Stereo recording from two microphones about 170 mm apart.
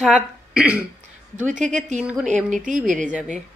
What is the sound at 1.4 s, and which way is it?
Speech, 45° right (ahead or behind).